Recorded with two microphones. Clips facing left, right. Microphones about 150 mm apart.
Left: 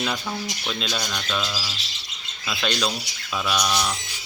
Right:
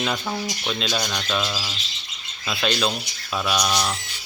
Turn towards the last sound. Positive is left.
turn(degrees=-10)  # may be behind; listen again after turning